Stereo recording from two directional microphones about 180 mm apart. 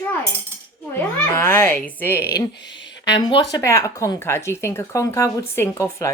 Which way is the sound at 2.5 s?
75° left (ahead or behind).